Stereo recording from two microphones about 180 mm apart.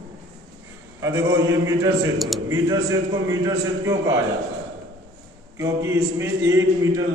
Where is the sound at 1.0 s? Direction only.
15° right (ahead or behind).